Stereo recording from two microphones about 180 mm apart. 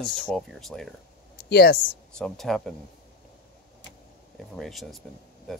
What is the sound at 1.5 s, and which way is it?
Speech, 65° left (ahead or behind).